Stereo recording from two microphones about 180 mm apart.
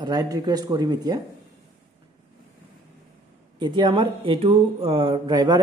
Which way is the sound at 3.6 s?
25° right (ahead or behind).